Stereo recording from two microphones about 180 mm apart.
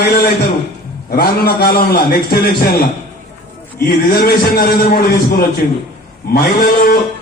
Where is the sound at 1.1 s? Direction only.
60° left (ahead or behind).